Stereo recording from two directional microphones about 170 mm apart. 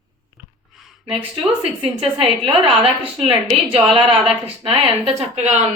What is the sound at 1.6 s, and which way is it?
A woman's voice, 35° right (ahead or behind).